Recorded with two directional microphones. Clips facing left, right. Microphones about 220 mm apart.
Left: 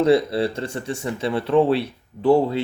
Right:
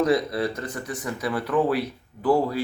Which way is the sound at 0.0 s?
30° left (ahead or behind).